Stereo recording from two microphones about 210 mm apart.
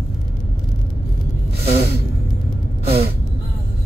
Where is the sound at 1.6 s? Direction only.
30° right (ahead or behind).